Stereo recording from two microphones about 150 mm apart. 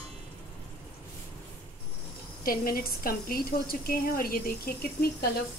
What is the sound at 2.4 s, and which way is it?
Speech, 75° left (ahead or behind).